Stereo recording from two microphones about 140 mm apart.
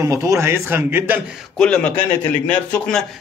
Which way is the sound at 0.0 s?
20° right (ahead or behind).